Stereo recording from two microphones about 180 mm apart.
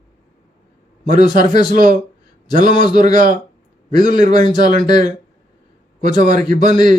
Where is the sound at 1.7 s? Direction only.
50° right (ahead or behind).